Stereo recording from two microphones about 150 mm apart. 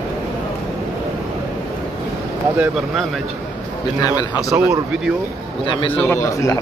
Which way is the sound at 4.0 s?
25° left (ahead or behind).